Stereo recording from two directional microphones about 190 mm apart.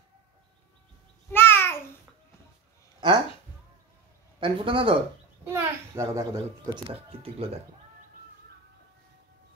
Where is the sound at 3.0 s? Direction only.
25° right (ahead or behind).